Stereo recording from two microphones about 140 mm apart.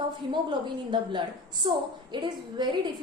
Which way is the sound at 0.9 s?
35° right (ahead or behind).